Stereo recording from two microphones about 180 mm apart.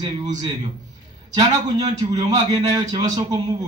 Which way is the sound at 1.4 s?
40° right (ahead or behind).